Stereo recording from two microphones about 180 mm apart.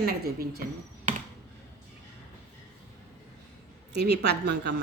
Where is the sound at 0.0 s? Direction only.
60° right (ahead or behind).